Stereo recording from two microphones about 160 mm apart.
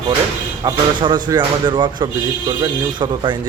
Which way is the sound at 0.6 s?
30° right (ahead or behind).